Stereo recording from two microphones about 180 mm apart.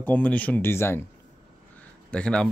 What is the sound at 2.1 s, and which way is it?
Speech, 5° left (ahead or behind).